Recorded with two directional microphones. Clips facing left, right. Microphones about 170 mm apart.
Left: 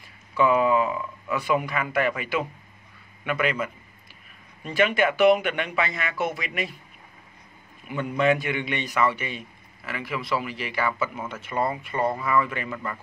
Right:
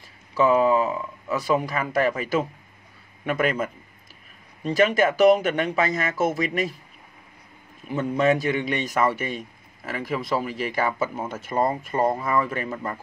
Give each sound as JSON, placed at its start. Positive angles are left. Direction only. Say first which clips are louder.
{"t": 0.3, "sound": "a man's voice", "louder": "right 2 dB", "side_deg": -40}
{"t": 7.9, "sound": "a man's voice", "louder": "right 2 dB", "side_deg": -40}